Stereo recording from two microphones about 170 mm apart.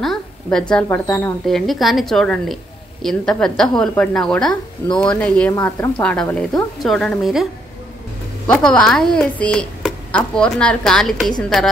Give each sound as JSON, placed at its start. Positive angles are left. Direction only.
{"t": 0.0, "sound": "a sound", "side_deg": 0}
{"t": 0.8, "sound": "speech", "side_deg": 15}
{"t": 1.4, "sound": "a woman's voice", "side_deg": 0}
{"t": 5.5, "sound": "a woman's voice", "side_deg": 15}
{"t": 8.5, "sound": "a woman's voice", "side_deg": 5}